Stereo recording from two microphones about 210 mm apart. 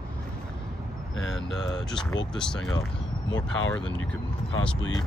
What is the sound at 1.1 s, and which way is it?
Speech, 65° left (ahead or behind).